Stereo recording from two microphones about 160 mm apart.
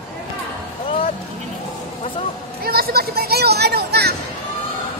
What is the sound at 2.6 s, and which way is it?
Speech, 70° right (ahead or behind).